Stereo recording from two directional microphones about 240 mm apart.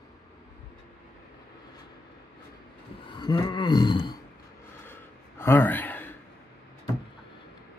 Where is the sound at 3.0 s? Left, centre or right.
Centre.